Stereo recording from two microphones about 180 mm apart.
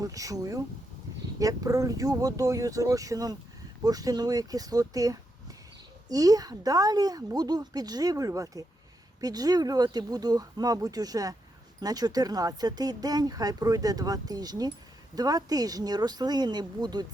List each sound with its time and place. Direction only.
0.0 s speech: 20° right (ahead or behind)